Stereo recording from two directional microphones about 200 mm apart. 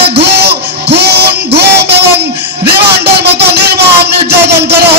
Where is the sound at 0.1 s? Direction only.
55° right (ahead or behind).